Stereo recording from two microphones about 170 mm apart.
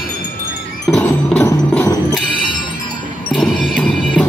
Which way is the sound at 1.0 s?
10° left (ahead or behind).